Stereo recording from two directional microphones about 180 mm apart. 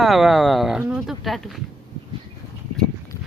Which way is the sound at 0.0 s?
Centre (ahead or behind).